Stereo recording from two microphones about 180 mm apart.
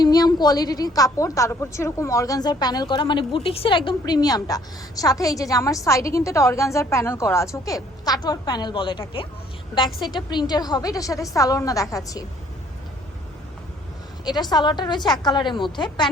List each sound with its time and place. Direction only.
0.0 s a woman's voice: 20° left (ahead or behind)
14.3 s a woman's voice: 20° left (ahead or behind)